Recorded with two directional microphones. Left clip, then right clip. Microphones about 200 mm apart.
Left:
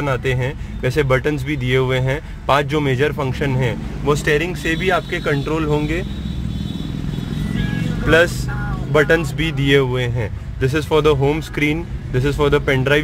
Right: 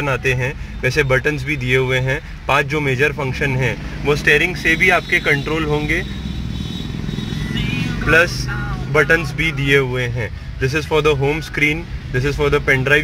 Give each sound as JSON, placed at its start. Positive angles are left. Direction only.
{"t": 0.0, "sound": "speech", "side_deg": 10}
{"t": 8.9, "sound": "speech", "side_deg": 20}